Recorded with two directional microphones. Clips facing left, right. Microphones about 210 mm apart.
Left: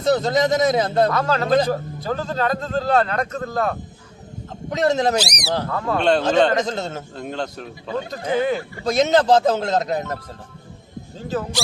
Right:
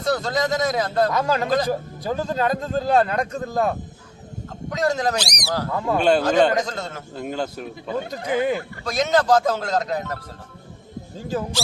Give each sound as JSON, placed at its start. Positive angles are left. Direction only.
{"t": 0.0, "sound": "speech", "side_deg": 20}
{"t": 1.1, "sound": "a man's voice", "side_deg": -10}
{"t": 4.7, "sound": "speech", "side_deg": 25}
{"t": 5.1, "sound": "speech", "side_deg": 10}
{"t": 5.7, "sound": "a man's voice", "side_deg": -10}
{"t": 6.6, "sound": "speech", "side_deg": 25}
{"t": 7.2, "sound": "a man's voice", "side_deg": -5}
{"t": 8.8, "sound": "speech", "side_deg": 25}